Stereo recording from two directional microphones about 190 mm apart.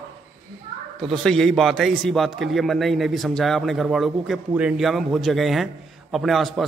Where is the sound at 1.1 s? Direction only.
Centre (ahead or behind).